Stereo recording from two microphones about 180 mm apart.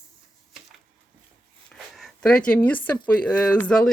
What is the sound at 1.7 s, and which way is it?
Zipper, 5° left (ahead or behind).